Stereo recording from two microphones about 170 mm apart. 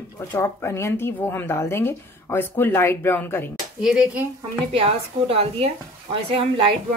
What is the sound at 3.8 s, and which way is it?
Speech, 5° right (ahead or behind).